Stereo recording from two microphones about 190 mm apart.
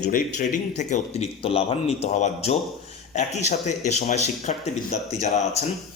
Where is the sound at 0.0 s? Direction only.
40° left (ahead or behind).